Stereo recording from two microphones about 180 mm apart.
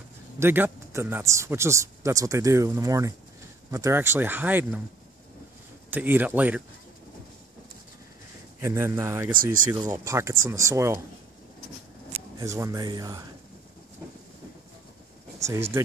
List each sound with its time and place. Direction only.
0.4 s speech: 15° right (ahead or behind)
5.9 s speech: 10° right (ahead or behind)
8.5 s speech: 15° right (ahead or behind)
9.4 s speech: 50° right (ahead or behind)
10.0 s speech: 15° right (ahead or behind)
12.4 s speech: 20° right (ahead or behind)
15.3 s speech: 15° right (ahead or behind)